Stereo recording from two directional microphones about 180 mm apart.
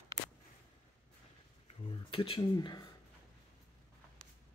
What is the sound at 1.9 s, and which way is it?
Speech, 30° left (ahead or behind).